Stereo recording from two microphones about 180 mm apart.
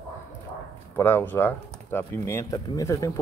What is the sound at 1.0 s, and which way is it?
Speech, 10° left (ahead or behind).